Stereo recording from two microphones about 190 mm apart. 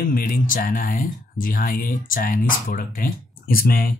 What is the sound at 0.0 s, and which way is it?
Speech, 50° left (ahead or behind).